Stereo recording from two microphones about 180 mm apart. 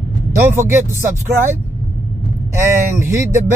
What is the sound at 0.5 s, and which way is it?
Speech, 15° right (ahead or behind).